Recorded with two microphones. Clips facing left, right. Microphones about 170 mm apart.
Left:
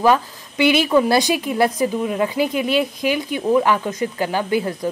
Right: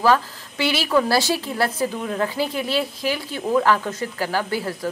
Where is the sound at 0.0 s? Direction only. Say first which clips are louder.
Left 2 dB; 20° left (ahead or behind).